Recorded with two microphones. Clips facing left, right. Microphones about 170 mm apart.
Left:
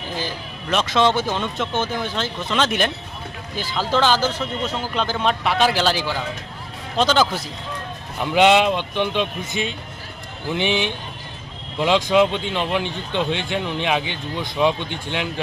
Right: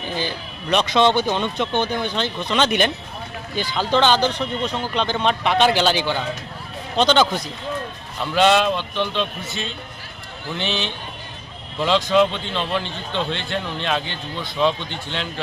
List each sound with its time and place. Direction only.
0.0 s speech: centre (ahead or behind)
8.2 s speech: 15° left (ahead or behind)